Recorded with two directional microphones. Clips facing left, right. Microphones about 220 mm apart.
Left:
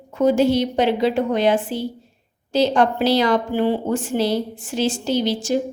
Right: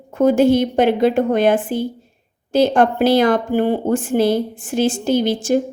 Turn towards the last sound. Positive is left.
turn(degrees=-50)  # may be behind; listen again after turning